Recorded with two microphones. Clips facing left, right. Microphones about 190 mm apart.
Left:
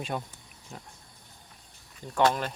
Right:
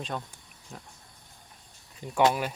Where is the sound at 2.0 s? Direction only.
10° right (ahead or behind).